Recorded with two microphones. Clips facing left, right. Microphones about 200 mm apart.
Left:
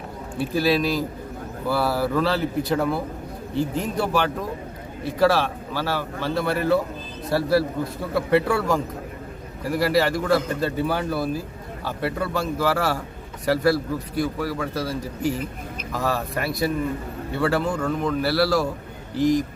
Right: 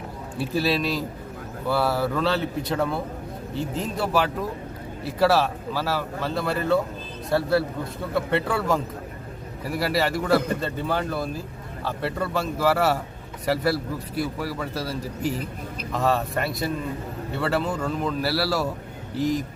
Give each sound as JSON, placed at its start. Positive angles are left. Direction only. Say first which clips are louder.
{"t": 0.3, "sound": "speech", "louder": "left 3 dB", "side_deg": 0}